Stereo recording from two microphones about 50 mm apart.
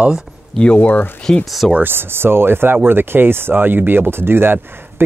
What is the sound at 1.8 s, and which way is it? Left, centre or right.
Speech, right.